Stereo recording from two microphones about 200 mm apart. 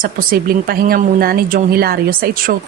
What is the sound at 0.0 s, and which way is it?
Speech, 45° right (ahead or behind).